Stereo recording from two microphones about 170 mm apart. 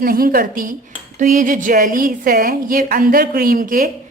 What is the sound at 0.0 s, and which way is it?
A woman's voice, 60° right (ahead or behind).